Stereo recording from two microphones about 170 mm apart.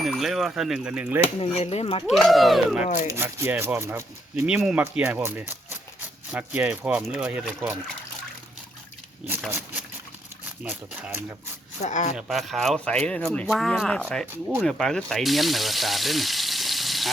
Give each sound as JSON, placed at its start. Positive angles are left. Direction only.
{"t": 0.0, "sound": "speech", "side_deg": 0}
{"t": 1.2, "sound": "speech", "side_deg": 35}
{"t": 2.0, "sound": "speech", "side_deg": 0}
{"t": 2.8, "sound": "speech", "side_deg": 45}
{"t": 3.1, "sound": "speech", "side_deg": -15}
{"t": 9.5, "sound": "speech", "side_deg": -10}
{"t": 11.8, "sound": "speech", "side_deg": 45}
{"t": 12.1, "sound": "speech", "side_deg": 0}